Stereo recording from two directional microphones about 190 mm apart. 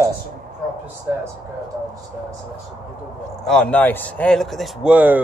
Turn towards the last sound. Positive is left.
turn(degrees=-10)  # may be behind; listen again after turning